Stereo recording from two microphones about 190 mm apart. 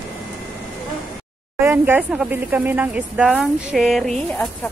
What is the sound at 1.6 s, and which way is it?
Speech, 10° right (ahead or behind).